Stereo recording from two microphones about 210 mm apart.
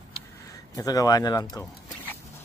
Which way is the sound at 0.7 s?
15° left (ahead or behind).